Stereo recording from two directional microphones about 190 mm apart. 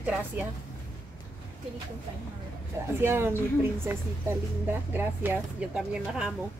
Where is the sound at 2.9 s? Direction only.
10° right (ahead or behind).